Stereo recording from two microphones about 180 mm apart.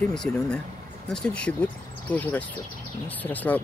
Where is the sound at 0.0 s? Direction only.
5° left (ahead or behind).